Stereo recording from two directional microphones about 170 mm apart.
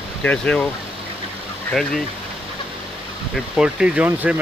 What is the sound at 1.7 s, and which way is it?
Speech, 5° left (ahead or behind).